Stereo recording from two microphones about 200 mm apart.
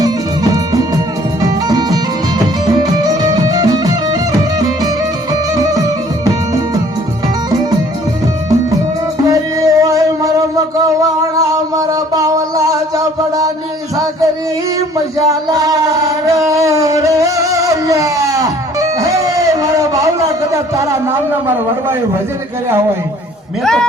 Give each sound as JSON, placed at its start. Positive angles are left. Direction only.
{"t": 0.5, "sound": "music", "side_deg": -20}
{"t": 5.5, "sound": "music", "side_deg": -15}
{"t": 9.2, "sound": "music", "side_deg": -15}
{"t": 11.3, "sound": "a sound", "side_deg": -20}
{"t": 15.3, "sound": "music", "side_deg": -15}
{"t": 21.4, "sound": "a sound", "side_deg": -10}